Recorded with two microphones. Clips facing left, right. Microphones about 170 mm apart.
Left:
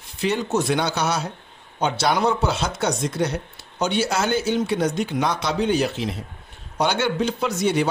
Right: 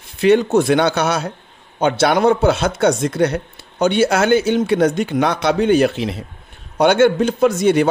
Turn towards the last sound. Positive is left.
turn(degrees=-55)  # may be behind; listen again after turning